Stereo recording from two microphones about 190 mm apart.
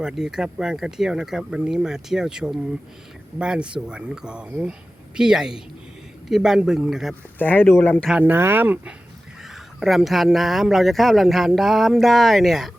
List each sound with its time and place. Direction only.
0.0 s speech: 5° right (ahead or behind)
7.3 s speech: 10° left (ahead or behind)
8.1 s speech: 10° right (ahead or behind)